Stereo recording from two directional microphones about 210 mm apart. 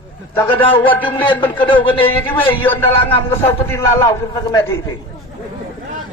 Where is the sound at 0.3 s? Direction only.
10° left (ahead or behind).